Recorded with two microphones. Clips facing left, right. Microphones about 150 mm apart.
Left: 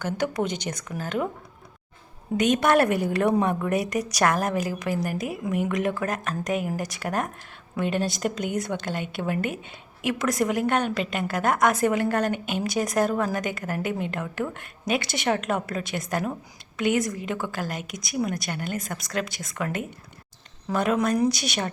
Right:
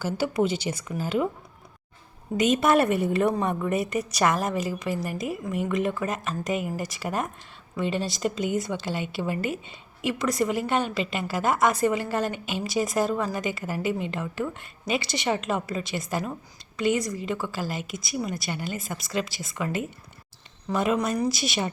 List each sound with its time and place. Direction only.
0.0 s speech: 5° right (ahead or behind)
2.4 s a woman's voice: 5° right (ahead or behind)
12.3 s a woman's voice: 50° left (ahead or behind)
12.6 s a woman's voice: centre (ahead or behind)